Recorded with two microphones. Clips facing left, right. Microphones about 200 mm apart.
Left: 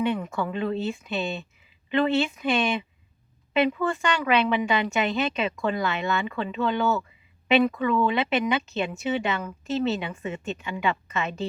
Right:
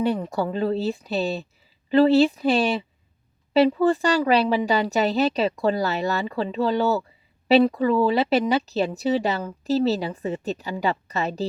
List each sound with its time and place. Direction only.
0.0 s speech: 35° right (ahead or behind)